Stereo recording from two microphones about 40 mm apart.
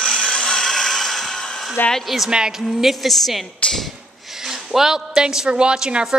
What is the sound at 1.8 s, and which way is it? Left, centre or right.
Speech, left.